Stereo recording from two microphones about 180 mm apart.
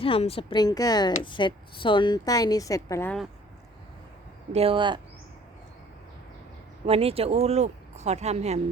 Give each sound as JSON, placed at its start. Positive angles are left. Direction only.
{"t": 0.0, "sound": "a woman's voice", "side_deg": 30}
{"t": 4.5, "sound": "speech", "side_deg": -30}
{"t": 6.8, "sound": "speech", "side_deg": -35}